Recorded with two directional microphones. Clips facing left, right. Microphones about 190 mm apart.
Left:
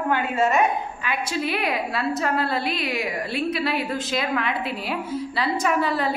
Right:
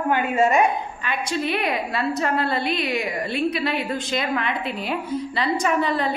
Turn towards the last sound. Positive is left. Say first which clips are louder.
# right 1 dB
turn(degrees=5)  # may be behind; listen again after turning